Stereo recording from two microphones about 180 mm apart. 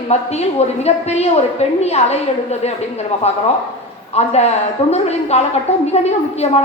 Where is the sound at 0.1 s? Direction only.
35° left (ahead or behind).